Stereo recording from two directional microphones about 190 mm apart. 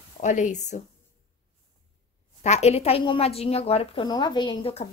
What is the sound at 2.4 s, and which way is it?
A woman's voice, 35° left (ahead or behind).